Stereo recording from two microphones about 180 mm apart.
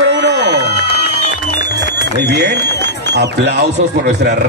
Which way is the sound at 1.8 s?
70° right (ahead or behind).